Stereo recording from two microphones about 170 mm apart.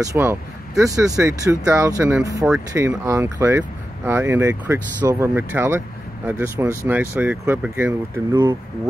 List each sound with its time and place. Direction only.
0.0 s speech: 15° right (ahead or behind)
8.3 s speech: 25° right (ahead or behind)